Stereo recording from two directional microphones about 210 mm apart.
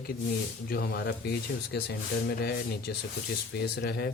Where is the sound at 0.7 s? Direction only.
45° left (ahead or behind).